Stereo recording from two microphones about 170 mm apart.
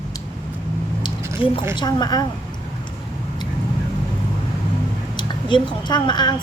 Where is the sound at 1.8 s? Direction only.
25° left (ahead or behind).